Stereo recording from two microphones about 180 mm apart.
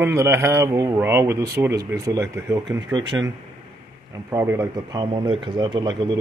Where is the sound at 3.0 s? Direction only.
90° right.